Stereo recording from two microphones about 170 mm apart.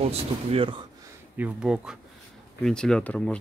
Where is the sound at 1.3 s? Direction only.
5° right (ahead or behind).